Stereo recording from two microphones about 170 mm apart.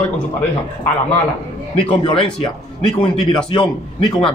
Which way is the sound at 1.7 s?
30° left (ahead or behind).